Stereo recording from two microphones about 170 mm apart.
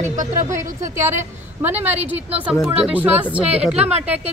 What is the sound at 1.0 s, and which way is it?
A woman's voice, 15° right (ahead or behind).